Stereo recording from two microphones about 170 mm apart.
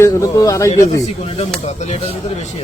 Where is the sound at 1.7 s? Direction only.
40° left (ahead or behind).